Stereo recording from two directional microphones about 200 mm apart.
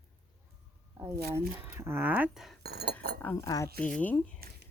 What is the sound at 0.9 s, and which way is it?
Speech, 15° right (ahead or behind).